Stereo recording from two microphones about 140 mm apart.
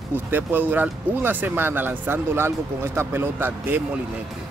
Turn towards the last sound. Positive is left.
turn(degrees=-15)  # may be behind; listen again after turning